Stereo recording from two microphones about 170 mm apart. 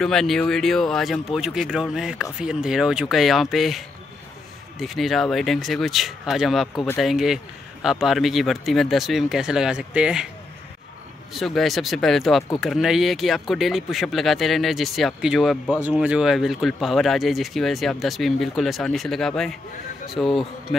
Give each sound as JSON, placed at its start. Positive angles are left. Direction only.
{"t": 0.0, "sound": "speech", "side_deg": 5}
{"t": 11.3, "sound": "speech", "side_deg": 0}